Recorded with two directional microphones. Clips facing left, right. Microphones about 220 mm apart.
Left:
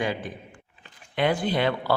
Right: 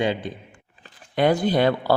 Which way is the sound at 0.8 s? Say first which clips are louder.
Right 5 dB; 40° right (ahead or behind).